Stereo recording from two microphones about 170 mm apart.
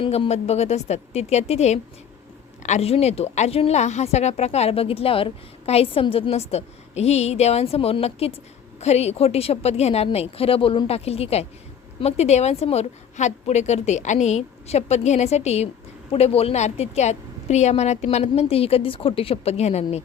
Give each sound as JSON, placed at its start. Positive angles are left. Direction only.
{"t": 0.0, "sound": "a woman's voice", "side_deg": 35}